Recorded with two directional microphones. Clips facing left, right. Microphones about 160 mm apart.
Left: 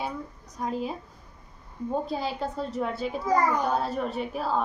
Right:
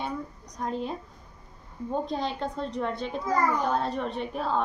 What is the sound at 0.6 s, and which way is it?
Speech, 5° left (ahead or behind).